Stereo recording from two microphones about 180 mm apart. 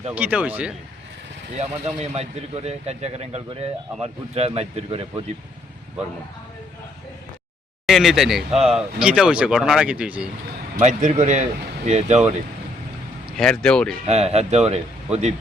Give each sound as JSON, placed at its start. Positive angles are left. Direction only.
{"t": 0.1, "sound": "speech", "side_deg": -10}
{"t": 1.5, "sound": "a man's voice", "side_deg": -40}
{"t": 7.9, "sound": "speech", "side_deg": 0}
{"t": 10.8, "sound": "a man's voice", "side_deg": -40}
{"t": 13.3, "sound": "speech", "side_deg": 5}
{"t": 14.1, "sound": "a man's voice", "side_deg": -35}